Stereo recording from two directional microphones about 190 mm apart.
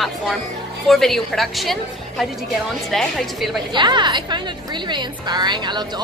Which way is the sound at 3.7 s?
25° right (ahead or behind).